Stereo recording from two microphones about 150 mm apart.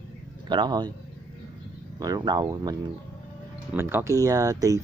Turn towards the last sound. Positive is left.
turn(degrees=-20)  # may be behind; listen again after turning